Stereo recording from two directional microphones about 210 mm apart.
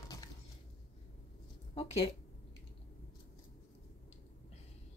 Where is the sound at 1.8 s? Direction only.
30° left (ahead or behind).